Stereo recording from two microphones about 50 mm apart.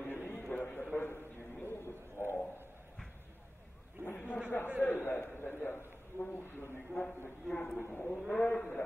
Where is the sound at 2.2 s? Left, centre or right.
Right.